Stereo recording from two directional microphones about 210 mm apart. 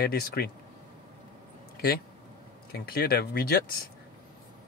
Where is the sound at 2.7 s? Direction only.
45° left (ahead or behind).